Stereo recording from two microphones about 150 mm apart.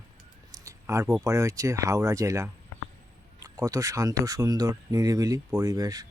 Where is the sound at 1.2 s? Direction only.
20° right (ahead or behind).